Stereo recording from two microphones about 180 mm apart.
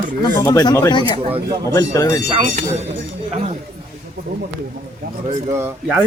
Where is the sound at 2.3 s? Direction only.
40° right (ahead or behind).